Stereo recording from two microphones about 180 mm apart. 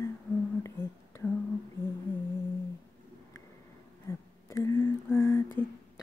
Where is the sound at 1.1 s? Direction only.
15° left (ahead or behind).